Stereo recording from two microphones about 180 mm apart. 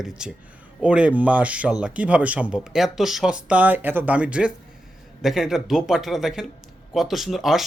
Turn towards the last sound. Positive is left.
turn(degrees=0)  # may be behind; listen again after turning